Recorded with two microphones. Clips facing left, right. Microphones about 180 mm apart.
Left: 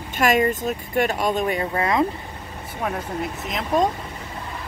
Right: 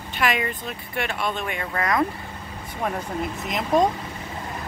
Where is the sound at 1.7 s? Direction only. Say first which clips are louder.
Right 1 dB; 25° left (ahead or behind).